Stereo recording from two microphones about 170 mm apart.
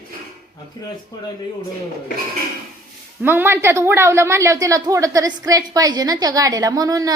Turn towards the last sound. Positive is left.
turn(degrees=-20)  # may be behind; listen again after turning